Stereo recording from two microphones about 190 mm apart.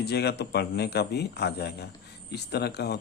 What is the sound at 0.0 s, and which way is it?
Speech, 60° left (ahead or behind).